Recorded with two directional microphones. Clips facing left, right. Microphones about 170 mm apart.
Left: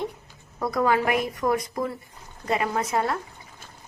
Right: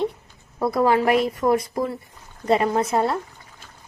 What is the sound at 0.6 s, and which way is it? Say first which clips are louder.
A woman's voice: right 4 dB; 25° right (ahead or behind).